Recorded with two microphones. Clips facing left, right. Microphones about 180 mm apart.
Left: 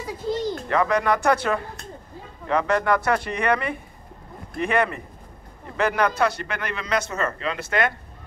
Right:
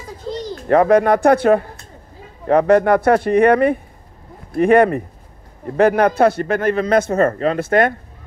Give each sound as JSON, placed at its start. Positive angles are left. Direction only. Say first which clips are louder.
{"t": 0.7, "sound": "a man's voice", "louder": "right 10 dB", "side_deg": -50}